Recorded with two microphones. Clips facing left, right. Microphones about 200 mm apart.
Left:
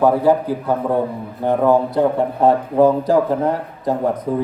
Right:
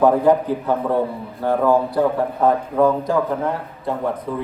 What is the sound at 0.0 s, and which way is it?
A man's voice, 10° left (ahead or behind).